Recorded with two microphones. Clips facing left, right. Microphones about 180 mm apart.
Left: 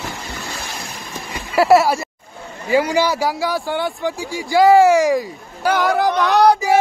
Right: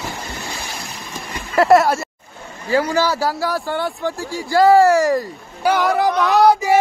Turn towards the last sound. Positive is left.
turn(degrees=0)  # may be behind; listen again after turning